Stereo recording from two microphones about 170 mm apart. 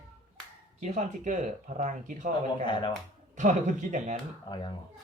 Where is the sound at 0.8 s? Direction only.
45° right (ahead or behind).